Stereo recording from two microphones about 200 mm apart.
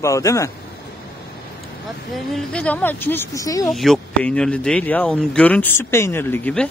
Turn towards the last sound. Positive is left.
turn(degrees=10)  # may be behind; listen again after turning